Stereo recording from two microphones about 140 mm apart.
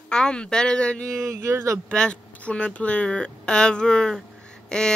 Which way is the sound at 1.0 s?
20° right (ahead or behind).